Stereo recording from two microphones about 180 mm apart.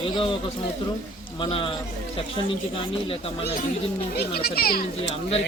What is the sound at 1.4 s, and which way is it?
Speech, 25° left (ahead or behind).